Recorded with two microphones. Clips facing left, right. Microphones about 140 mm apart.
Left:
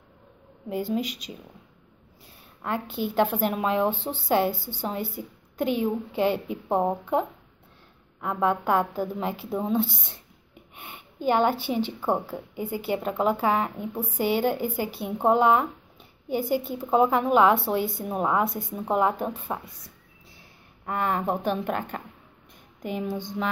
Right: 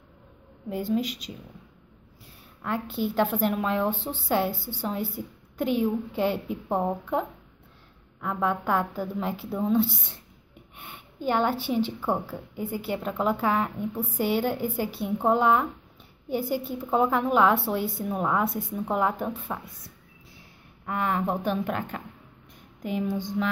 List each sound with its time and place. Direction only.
0.7 s a woman's voice: centre (ahead or behind)
2.6 s a woman's voice: centre (ahead or behind)
8.2 s a woman's voice: 5° left (ahead or behind)
9.2 s a woman's voice: centre (ahead or behind)
9.5 s speech: 20° left (ahead or behind)
9.8 s a woman's voice: 5° right (ahead or behind)
12.0 s a woman's voice: 15° left (ahead or behind)
12.5 s a woman's voice: centre (ahead or behind)
18.0 s a woman's voice: 10° left (ahead or behind)
20.8 s a woman's voice: centre (ahead or behind)